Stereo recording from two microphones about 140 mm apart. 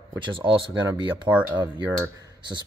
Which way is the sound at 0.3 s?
35° right (ahead or behind).